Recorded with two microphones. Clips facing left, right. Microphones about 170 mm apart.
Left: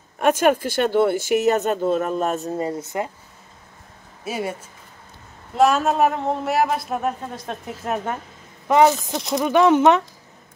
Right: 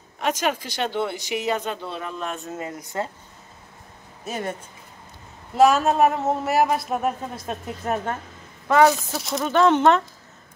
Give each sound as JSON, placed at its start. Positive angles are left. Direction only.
{"t": 0.2, "sound": "speech", "side_deg": 50}
{"t": 4.2, "sound": "speech", "side_deg": 10}
{"t": 5.6, "sound": "speech", "side_deg": 0}
{"t": 8.6, "sound": "speech", "side_deg": 20}
{"t": 8.9, "sound": "speech", "side_deg": 0}
{"t": 9.4, "sound": "speech", "side_deg": 10}